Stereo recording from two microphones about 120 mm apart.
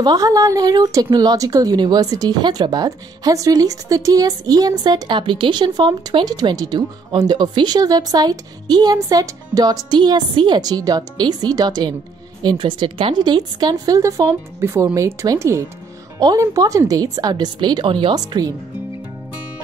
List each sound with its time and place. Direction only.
0.0 s speech: 30° right (ahead or behind)